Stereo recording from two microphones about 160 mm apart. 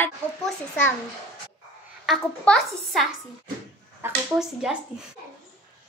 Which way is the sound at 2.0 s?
5° left (ahead or behind).